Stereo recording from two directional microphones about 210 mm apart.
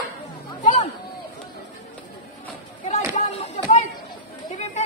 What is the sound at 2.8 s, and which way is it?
Chop, 30° left (ahead or behind).